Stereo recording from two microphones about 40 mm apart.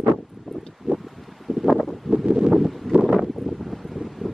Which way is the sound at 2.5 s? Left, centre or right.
Centre.